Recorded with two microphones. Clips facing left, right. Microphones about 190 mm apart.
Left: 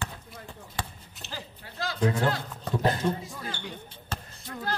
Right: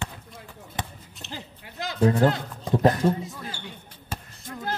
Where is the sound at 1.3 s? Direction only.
20° right (ahead or behind).